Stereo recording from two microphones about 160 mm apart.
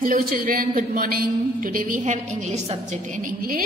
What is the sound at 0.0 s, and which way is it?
A woman's voice, 60° right (ahead or behind).